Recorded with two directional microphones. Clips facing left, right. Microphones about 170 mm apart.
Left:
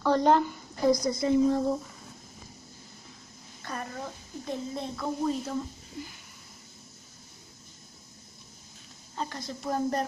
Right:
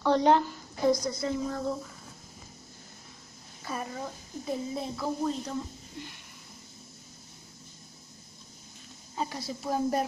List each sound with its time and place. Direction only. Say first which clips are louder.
0.0 s a woman's voice: even; 5° left (ahead or behind)
1.0 s a woman's voice: left 7 dB; 20° left (ahead or behind)
3.6 s a woman's voice: right 1 dB; 5° right (ahead or behind)
9.1 s a woman's voice: right 1 dB; 10° right (ahead or behind)